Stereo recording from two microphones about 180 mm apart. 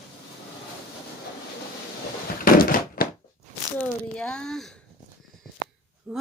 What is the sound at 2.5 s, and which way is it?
Thunk, 55° left (ahead or behind).